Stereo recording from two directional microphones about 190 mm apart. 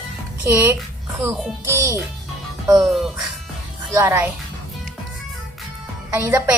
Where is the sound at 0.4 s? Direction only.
15° right (ahead or behind).